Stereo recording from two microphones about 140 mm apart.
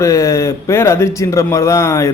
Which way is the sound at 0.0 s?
20° left (ahead or behind).